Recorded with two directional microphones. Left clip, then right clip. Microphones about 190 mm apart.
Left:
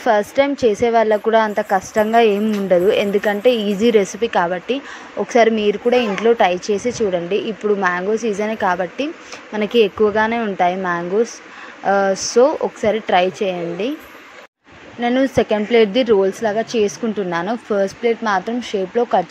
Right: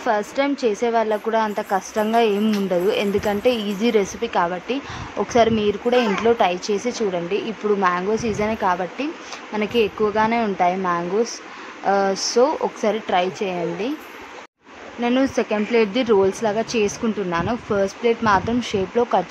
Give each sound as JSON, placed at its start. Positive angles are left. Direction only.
{"t": 0.0, "sound": "speech", "side_deg": 15}
{"t": 15.0, "sound": "speech", "side_deg": 15}